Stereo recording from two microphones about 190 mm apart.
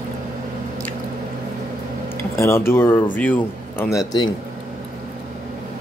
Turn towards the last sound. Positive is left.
turn(degrees=20)  # may be behind; listen again after turning